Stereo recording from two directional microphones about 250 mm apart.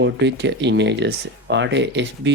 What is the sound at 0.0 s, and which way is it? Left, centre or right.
Speech, right.